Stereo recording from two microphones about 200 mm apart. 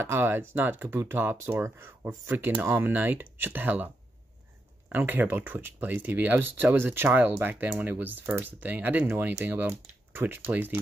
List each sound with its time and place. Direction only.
0.0 s speech: 10° right (ahead or behind)